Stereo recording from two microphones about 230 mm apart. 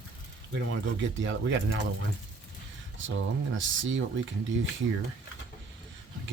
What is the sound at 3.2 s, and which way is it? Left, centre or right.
Speech, right.